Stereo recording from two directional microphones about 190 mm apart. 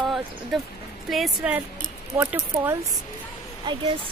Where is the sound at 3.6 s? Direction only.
25° right (ahead or behind).